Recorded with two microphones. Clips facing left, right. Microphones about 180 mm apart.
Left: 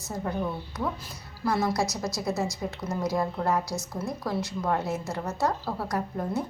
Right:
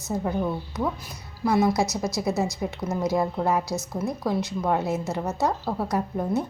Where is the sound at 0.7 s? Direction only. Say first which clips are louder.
Right 4 dB; 20° right (ahead or behind).